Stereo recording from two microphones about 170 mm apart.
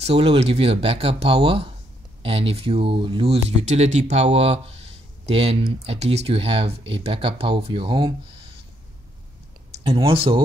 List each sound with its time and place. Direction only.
0.0 s speech: 35° right (ahead or behind)
9.8 s speech: 35° right (ahead or behind)